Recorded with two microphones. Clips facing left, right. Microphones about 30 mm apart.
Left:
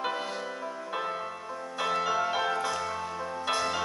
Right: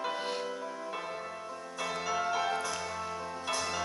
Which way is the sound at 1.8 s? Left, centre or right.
Left.